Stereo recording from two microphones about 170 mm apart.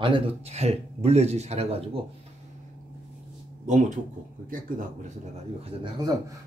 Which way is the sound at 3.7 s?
45° right (ahead or behind).